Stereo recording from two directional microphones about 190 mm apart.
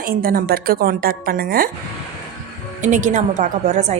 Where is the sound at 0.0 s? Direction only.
50° right (ahead or behind).